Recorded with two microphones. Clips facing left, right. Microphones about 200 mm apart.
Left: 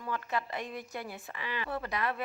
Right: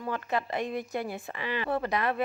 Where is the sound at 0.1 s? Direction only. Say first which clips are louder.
Right 4 dB; 65° right (ahead or behind).